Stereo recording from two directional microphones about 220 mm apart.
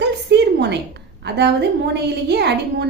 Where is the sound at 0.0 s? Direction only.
50° right (ahead or behind).